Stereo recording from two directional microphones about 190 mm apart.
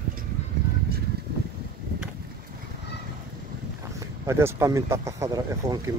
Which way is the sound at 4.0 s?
15° right (ahead or behind).